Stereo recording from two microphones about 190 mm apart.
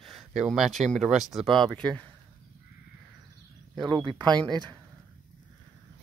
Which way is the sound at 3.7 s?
20° right (ahead or behind).